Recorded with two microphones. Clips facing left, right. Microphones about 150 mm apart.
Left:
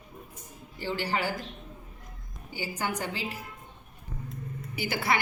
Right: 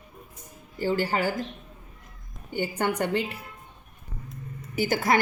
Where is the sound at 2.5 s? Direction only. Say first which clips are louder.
Right 6 dB; 60° right (ahead or behind).